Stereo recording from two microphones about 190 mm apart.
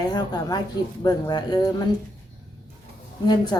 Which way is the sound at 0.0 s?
20° left (ahead or behind).